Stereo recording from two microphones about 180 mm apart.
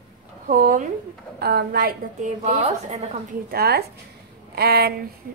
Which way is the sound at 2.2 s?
40° right (ahead or behind).